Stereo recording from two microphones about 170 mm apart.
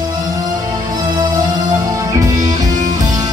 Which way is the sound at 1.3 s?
20° right (ahead or behind).